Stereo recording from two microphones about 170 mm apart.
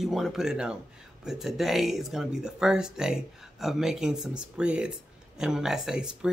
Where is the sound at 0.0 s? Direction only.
Centre (ahead or behind).